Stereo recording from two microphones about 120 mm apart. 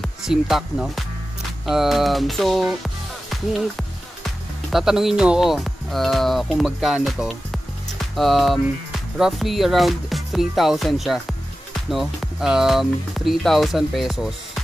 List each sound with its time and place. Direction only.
0.0 s speech: centre (ahead or behind)